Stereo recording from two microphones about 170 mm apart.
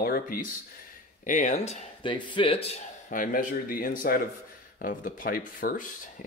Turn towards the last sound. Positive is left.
turn(degrees=50)  # may be behind; listen again after turning